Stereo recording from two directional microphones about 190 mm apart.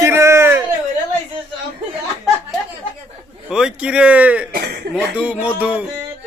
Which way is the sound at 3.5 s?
5° right (ahead or behind).